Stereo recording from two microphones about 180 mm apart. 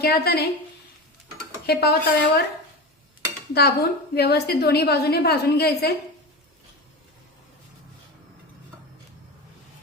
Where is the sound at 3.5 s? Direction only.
65° left (ahead or behind).